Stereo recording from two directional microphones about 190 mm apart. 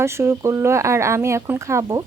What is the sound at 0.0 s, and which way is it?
Speech, 15° right (ahead or behind).